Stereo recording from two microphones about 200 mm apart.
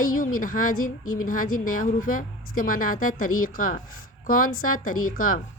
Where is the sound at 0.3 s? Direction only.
45° left (ahead or behind).